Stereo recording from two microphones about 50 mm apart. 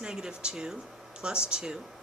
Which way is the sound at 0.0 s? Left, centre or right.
Centre.